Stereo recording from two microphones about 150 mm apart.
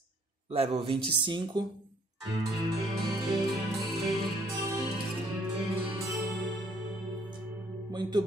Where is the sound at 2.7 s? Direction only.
20° right (ahead or behind).